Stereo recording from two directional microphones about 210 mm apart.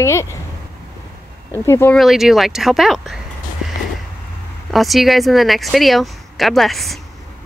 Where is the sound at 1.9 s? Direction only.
Centre (ahead or behind).